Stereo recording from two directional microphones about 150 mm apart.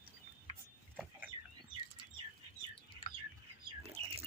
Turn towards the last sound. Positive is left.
turn(degrees=-40)  # may be behind; listen again after turning